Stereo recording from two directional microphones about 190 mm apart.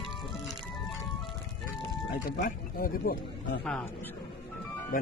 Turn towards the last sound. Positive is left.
turn(degrees=50)  # may be behind; listen again after turning